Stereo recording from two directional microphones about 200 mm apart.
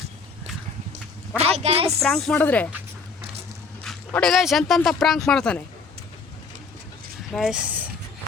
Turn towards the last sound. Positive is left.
turn(degrees=-5)  # may be behind; listen again after turning